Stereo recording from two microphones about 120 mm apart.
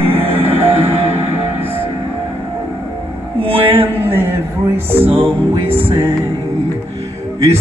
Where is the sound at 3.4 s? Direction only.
50° right (ahead or behind).